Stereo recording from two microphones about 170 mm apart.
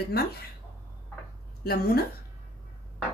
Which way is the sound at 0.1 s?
70° left (ahead or behind).